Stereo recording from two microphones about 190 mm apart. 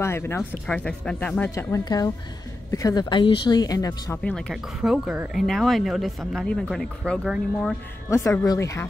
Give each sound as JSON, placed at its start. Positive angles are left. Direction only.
{"t": 0.0, "sound": "speech", "side_deg": 15}
{"t": 4.2, "sound": "speech", "side_deg": 5}
{"t": 8.1, "sound": "speech", "side_deg": 15}